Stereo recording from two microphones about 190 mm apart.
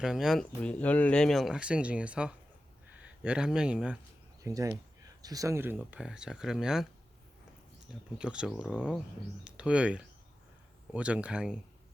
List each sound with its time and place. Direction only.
0.0 s speech: centre (ahead or behind)
4.4 s speech: 15° right (ahead or behind)
8.2 s speech: 5° right (ahead or behind)